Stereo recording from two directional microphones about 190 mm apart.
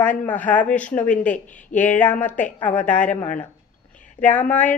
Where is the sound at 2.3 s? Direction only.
40° left (ahead or behind).